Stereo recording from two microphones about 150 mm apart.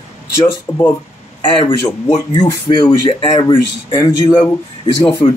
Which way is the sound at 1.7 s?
20° left (ahead or behind).